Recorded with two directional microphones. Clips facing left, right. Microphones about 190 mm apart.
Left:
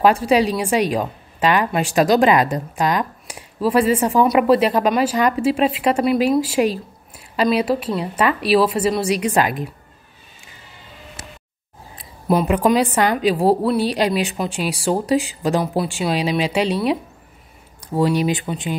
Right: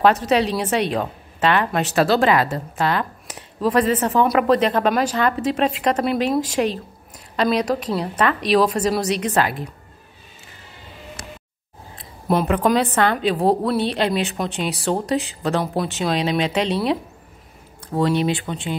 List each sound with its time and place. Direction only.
0.0 s a woman's voice: 10° left (ahead or behind)
12.0 s a sound: centre (ahead or behind)
12.6 s a woman's voice: 10° left (ahead or behind)
17.9 s a woman's voice: 10° left (ahead or behind)